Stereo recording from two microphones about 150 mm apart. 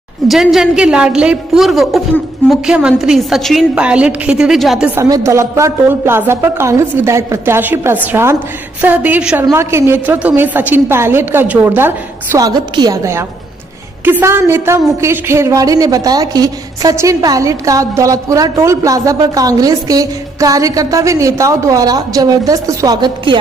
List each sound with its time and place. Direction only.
0.3 s a woman's voice: centre (ahead or behind)
4.9 s a woman's voice: 20° right (ahead or behind)